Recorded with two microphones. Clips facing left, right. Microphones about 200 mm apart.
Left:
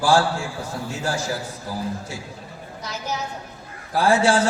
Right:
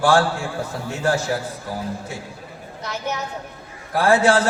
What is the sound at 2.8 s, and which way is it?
A man's voice, 60° right (ahead or behind).